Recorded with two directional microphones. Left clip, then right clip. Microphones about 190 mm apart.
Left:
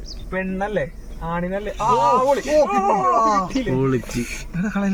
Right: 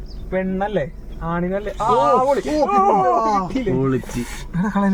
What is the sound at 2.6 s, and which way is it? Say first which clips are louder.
Speech: right 3 dB; 40° right (ahead or behind).